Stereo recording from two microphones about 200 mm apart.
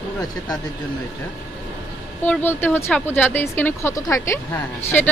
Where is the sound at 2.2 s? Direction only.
10° left (ahead or behind).